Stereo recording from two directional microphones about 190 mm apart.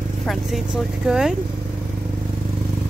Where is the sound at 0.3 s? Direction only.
Centre (ahead or behind).